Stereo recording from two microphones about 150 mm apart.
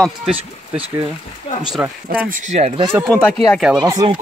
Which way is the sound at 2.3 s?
50° right (ahead or behind).